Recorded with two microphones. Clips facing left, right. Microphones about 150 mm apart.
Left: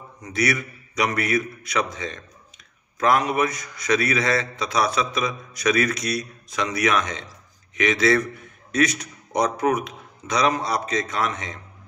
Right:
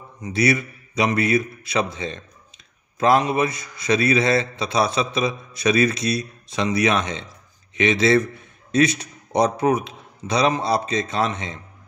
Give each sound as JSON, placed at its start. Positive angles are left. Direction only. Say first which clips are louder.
{"t": 0.2, "sound": "a man's voice", "louder": "right 4 dB", "side_deg": -25}